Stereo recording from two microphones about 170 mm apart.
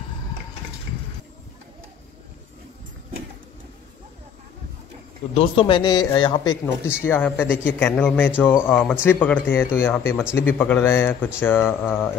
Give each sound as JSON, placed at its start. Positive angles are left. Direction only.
{"t": 5.3, "sound": "a man's voice", "side_deg": 30}
{"t": 7.1, "sound": "a man's voice", "side_deg": 10}